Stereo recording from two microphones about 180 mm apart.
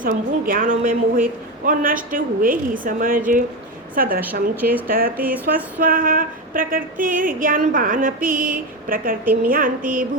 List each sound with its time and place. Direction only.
0.0 s a sound: 50° right (ahead or behind)
3.9 s a woman's voice: 50° right (ahead or behind)
4.2 s a woman's voice: 10° right (ahead or behind)
4.9 s speech: 55° right (ahead or behind)
5.2 s a woman's voice: 10° right (ahead or behind)
5.8 s a sound: 50° right (ahead or behind)